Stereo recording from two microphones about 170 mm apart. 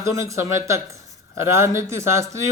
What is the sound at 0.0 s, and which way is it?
Speech, 15° right (ahead or behind).